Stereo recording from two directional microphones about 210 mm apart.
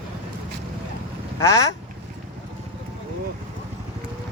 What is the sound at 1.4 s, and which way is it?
Speech, 15° left (ahead or behind).